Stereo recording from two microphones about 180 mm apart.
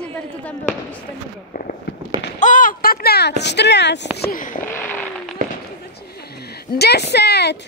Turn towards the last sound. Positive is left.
turn(degrees=65)  # may be behind; listen again after turning